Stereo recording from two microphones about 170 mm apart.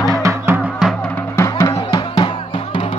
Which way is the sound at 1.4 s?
20° left (ahead or behind).